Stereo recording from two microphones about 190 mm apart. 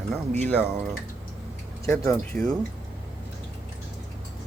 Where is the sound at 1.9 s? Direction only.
15° left (ahead or behind).